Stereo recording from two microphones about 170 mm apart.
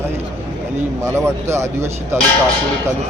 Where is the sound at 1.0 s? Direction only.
15° right (ahead or behind).